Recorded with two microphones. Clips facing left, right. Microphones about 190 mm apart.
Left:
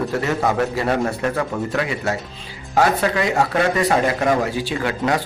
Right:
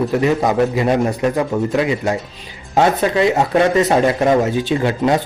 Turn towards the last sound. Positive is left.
turn(degrees=-25)  # may be behind; listen again after turning